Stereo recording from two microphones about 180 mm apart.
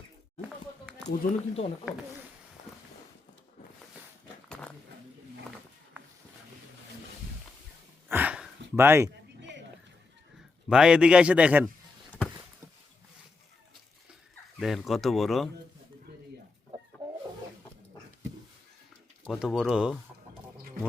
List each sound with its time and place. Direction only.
1.0 s speech: 40° left (ahead or behind)
8.1 s a sound: 10° right (ahead or behind)
10.7 s a man's voice: 5° right (ahead or behind)
14.6 s a man's voice: centre (ahead or behind)
19.2 s a man's voice: centre (ahead or behind)